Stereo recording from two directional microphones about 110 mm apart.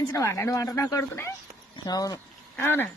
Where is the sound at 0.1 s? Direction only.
25° left (ahead or behind).